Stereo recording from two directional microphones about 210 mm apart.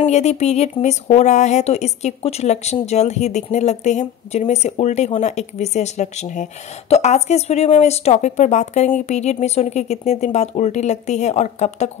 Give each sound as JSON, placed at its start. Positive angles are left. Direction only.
{"t": 0.0, "sound": "speech", "side_deg": 30}